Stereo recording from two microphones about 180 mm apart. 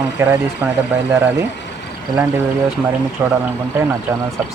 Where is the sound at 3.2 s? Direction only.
15° right (ahead or behind).